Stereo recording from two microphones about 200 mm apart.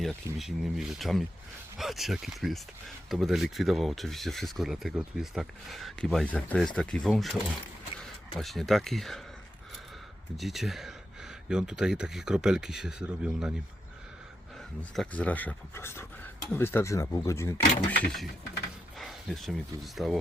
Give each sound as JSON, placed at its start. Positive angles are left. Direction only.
{"t": 0.3, "sound": "speech", "side_deg": 0}
{"t": 10.3, "sound": "speech", "side_deg": 0}
{"t": 14.8, "sound": "speech", "side_deg": 5}
{"t": 17.9, "sound": "speech", "side_deg": 0}